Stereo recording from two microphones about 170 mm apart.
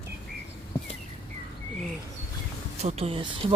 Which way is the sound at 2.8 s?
35° right (ahead or behind).